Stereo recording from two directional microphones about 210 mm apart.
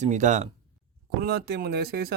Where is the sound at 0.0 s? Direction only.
35° right (ahead or behind).